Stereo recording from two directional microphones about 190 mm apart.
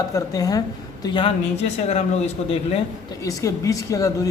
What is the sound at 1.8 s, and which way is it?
Speech, 35° left (ahead or behind).